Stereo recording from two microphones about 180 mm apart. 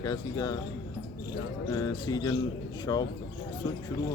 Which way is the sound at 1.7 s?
20° left (ahead or behind).